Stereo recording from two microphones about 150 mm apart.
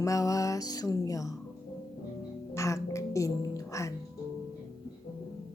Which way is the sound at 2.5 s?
20° left (ahead or behind).